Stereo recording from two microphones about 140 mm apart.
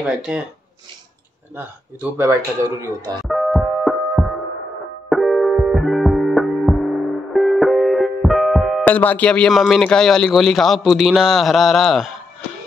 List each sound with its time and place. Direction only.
0.0 s a man's voice: 5° right (ahead or behind)
2.1 s speech: 20° right (ahead or behind)
3.3 s music: centre (ahead or behind)
8.8 s a man's voice: 10° left (ahead or behind)